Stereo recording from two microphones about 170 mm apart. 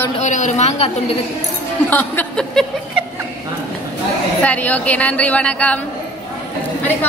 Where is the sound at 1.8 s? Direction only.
10° left (ahead or behind).